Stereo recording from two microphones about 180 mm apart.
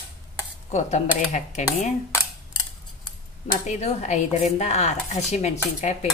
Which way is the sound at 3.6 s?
40° left (ahead or behind).